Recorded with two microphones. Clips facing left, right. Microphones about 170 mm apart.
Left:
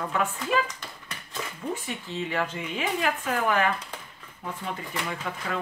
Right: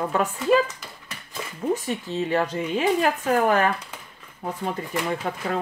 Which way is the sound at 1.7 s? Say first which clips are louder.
Right 6 dB; 40° right (ahead or behind).